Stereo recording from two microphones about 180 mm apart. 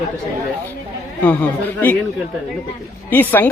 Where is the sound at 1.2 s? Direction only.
10° left (ahead or behind).